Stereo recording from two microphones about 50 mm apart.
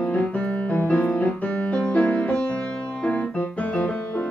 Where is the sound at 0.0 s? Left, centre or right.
Left.